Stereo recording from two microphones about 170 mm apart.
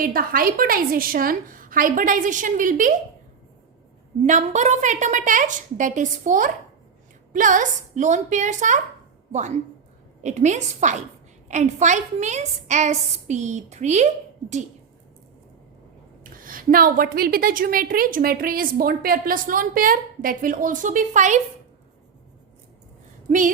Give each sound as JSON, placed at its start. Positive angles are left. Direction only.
{"t": 0.0, "sound": "a woman's voice", "side_deg": -55}
{"t": 4.2, "sound": "a woman's voice", "side_deg": -45}
{"t": 10.2, "sound": "a woman's voice", "side_deg": -45}
{"t": 16.4, "sound": "a woman's voice", "side_deg": -55}